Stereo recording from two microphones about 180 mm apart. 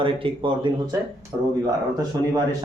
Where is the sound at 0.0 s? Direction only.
30° right (ahead or behind).